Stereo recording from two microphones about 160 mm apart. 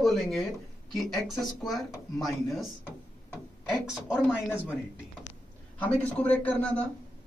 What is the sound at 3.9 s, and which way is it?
Speech, centre (ahead or behind).